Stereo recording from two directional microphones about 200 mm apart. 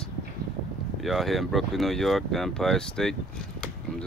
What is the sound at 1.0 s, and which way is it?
Speech, centre (ahead or behind).